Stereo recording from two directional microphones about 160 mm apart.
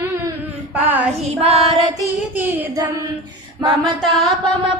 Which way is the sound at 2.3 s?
10° right (ahead or behind).